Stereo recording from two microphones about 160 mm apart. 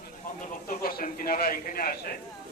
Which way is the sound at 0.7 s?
65° left (ahead or behind).